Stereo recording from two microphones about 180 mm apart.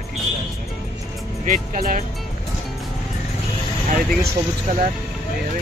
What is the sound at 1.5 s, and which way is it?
Speech, 50° right (ahead or behind).